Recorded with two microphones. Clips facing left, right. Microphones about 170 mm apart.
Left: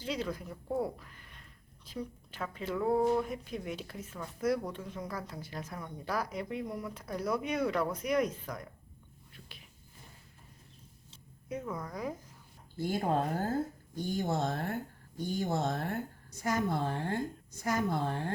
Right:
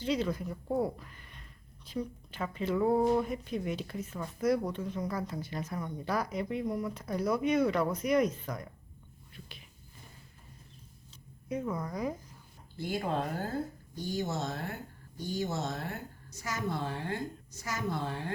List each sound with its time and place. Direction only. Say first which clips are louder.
0.0 s speech: right 5 dB; centre (ahead or behind)
0.9 s a sound: right 3 dB; centre (ahead or behind)
1.8 s speech: right 4 dB; 5° left (ahead or behind)
9.3 s a sound: right 4 dB; centre (ahead or behind)
11.6 s speech: right 4 dB; 5° right (ahead or behind)
12.7 s a woman's voice: left 2 dB; 45° left (ahead or behind)